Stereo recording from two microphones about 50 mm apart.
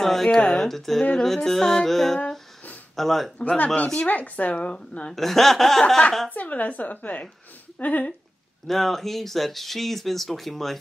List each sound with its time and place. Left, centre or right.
0.0 s a sound: centre
0.5 s music: centre
3.0 s speech: centre
3.3 s speech: left
5.1 s speech: centre
6.3 s a woman's voice: left
8.6 s speech: centre